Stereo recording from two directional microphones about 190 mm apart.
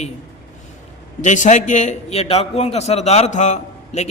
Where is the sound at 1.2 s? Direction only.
40° left (ahead or behind).